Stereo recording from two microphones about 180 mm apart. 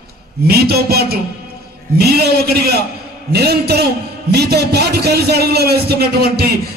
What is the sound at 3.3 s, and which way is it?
A man's voice, 60° right (ahead or behind).